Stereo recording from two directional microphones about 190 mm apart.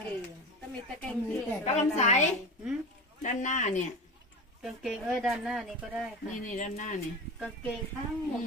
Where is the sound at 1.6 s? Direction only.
35° left (ahead or behind).